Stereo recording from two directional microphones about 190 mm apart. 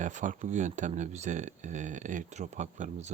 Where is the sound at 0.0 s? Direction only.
40° right (ahead or behind).